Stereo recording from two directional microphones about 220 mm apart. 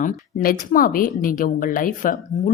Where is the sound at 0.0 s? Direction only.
35° left (ahead or behind).